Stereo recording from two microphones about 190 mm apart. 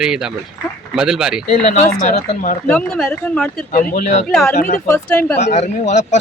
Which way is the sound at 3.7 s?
45° left (ahead or behind).